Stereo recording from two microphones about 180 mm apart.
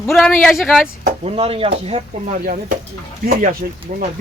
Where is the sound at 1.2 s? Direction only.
30° right (ahead or behind).